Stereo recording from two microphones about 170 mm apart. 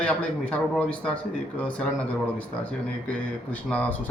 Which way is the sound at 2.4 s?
10° left (ahead or behind).